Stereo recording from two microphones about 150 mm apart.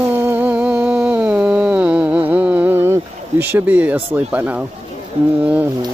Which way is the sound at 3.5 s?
10° right (ahead or behind).